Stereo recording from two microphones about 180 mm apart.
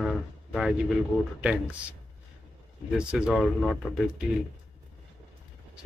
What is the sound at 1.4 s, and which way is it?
Speech, 5° right (ahead or behind).